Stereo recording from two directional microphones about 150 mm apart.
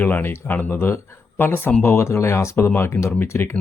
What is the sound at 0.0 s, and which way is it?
Speech, 15° left (ahead or behind).